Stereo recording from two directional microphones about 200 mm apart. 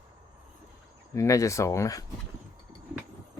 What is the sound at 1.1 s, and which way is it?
Speech, 15° left (ahead or behind).